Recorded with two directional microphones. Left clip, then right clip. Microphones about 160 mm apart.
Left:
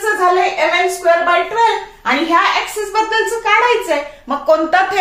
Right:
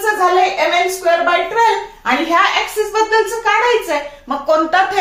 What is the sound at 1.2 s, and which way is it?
Speech, centre (ahead or behind).